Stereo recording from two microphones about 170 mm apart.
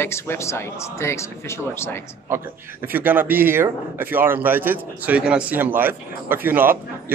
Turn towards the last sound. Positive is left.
turn(degrees=-10)  # may be behind; listen again after turning